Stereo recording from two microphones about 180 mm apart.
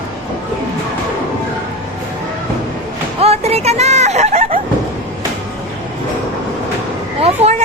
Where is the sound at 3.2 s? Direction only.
35° right (ahead or behind).